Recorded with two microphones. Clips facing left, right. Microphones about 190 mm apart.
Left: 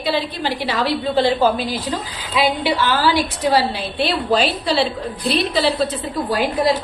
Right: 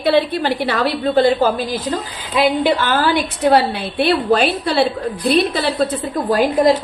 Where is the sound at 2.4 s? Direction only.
50° right (ahead or behind).